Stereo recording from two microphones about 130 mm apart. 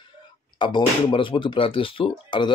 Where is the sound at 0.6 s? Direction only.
35° left (ahead or behind).